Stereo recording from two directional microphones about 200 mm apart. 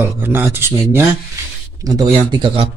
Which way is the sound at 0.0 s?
10° right (ahead or behind).